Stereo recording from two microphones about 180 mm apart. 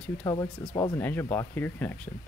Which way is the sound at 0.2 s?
20° left (ahead or behind).